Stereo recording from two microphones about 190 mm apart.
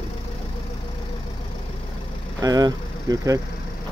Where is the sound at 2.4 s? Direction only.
20° right (ahead or behind).